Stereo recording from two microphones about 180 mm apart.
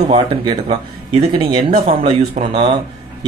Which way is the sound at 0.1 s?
30° right (ahead or behind).